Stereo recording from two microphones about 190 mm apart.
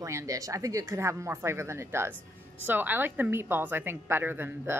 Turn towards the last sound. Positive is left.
turn(degrees=-10)  # may be behind; listen again after turning